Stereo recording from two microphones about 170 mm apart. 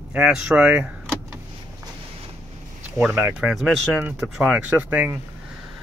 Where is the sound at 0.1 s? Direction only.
5° right (ahead or behind).